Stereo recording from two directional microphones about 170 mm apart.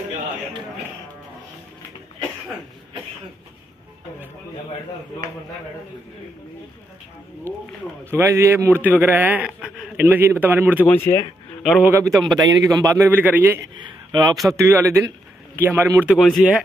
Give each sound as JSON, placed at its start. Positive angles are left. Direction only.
{"t": 8.1, "sound": "a man's voice", "side_deg": -15}
{"t": 10.9, "sound": "speech", "side_deg": 10}
{"t": 11.6, "sound": "a man's voice", "side_deg": 0}
{"t": 12.4, "sound": "a man's voice", "side_deg": -20}
{"t": 14.3, "sound": "a man's voice", "side_deg": 0}
{"t": 14.6, "sound": "a man's voice", "side_deg": -15}
{"t": 16.2, "sound": "a man's voice", "side_deg": 0}